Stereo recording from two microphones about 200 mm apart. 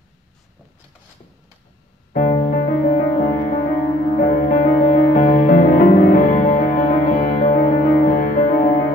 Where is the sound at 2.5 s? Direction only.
35° left (ahead or behind).